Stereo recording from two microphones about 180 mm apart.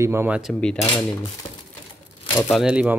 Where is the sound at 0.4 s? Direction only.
Centre (ahead or behind).